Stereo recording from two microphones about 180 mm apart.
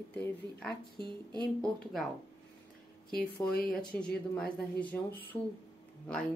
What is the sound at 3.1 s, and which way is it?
Speech, 5° left (ahead or behind).